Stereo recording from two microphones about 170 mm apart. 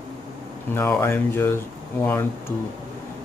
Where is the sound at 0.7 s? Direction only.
15° left (ahead or behind).